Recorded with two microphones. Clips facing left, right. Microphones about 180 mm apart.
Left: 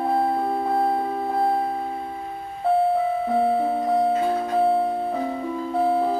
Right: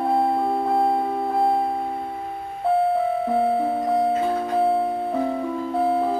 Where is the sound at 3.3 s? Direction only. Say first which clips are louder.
Left 1 dB; centre (ahead or behind).